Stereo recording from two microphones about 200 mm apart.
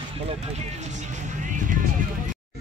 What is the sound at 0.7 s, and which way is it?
Music, 35° right (ahead or behind).